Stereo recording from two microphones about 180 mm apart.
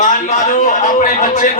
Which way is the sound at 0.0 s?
45° left (ahead or behind).